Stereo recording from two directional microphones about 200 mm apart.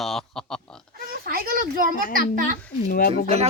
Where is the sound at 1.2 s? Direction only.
45° right (ahead or behind).